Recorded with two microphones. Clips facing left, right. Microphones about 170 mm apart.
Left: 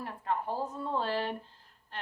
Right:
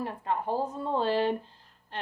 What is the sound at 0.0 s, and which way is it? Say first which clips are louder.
A woman's voice: right 3 dB; 20° right (ahead or behind).